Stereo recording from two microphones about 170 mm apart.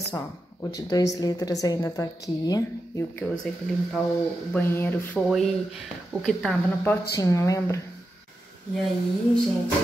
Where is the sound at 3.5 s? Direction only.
5° left (ahead or behind).